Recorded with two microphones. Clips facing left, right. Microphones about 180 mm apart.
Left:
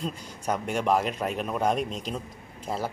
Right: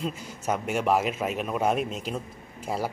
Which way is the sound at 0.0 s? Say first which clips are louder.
Right 1 dB; 5° right (ahead or behind).